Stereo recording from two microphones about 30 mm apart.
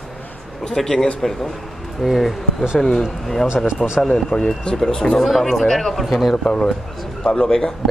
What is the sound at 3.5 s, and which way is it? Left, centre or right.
Speech, right.